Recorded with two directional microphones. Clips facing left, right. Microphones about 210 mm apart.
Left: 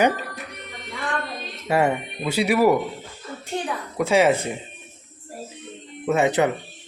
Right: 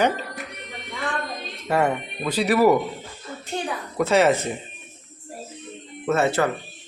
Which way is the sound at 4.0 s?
10° left (ahead or behind).